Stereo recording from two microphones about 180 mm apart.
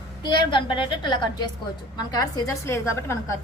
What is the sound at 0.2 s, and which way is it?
A woman's voice, 25° left (ahead or behind).